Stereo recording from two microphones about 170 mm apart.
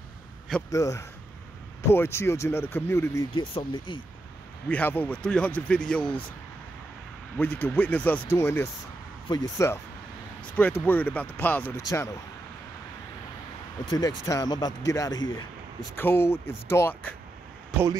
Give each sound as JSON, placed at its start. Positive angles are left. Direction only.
{"t": 0.7, "sound": "speech", "side_deg": 20}
{"t": 3.3, "sound": "speech", "side_deg": 30}
{"t": 4.6, "sound": "speech", "side_deg": 10}
{"t": 7.3, "sound": "speech", "side_deg": 10}
{"t": 13.8, "sound": "speech", "side_deg": 20}